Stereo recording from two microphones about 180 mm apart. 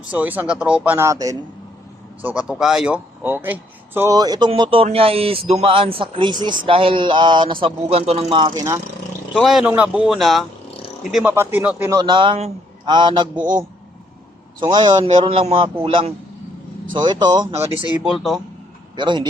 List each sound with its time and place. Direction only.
0.1 s a man's voice: 10° right (ahead or behind)
2.2 s speech: 5° right (ahead or behind); by 8.5 s 30° right (ahead or behind)
8.5 s a man's voice: 15° right (ahead or behind)
9.3 s speech: centre (ahead or behind); by 17.5 s 25° right (ahead or behind)
18.0 s speech: centre (ahead or behind)
18.9 s speech: 25° right (ahead or behind)